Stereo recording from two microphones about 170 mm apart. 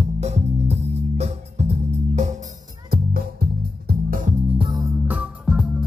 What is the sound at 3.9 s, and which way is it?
Music, 55° right (ahead or behind).